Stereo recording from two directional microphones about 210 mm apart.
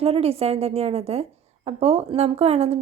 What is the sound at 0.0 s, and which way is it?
A woman's voice, 30° right (ahead or behind).